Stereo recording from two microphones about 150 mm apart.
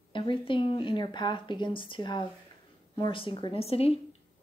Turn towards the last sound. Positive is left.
turn(degrees=40)  # may be behind; listen again after turning